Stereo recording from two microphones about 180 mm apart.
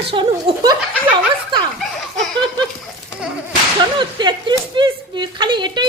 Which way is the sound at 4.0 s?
25° right (ahead or behind).